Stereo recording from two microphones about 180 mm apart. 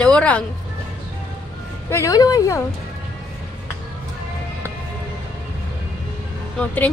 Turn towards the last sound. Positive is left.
turn(degrees=10)  # may be behind; listen again after turning